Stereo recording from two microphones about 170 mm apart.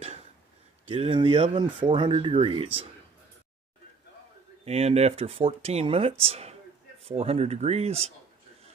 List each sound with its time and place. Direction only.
0.8 s speech: 35° right (ahead or behind)
4.6 s speech: 35° right (ahead or behind)